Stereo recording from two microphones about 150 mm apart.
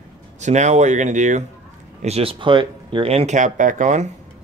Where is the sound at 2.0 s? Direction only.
40° right (ahead or behind).